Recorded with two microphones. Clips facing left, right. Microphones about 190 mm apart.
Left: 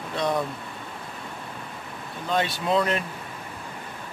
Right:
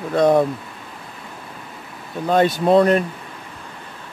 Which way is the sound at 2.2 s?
45° right (ahead or behind).